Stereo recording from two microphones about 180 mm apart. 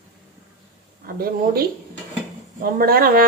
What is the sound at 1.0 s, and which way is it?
Speech, 55° right (ahead or behind).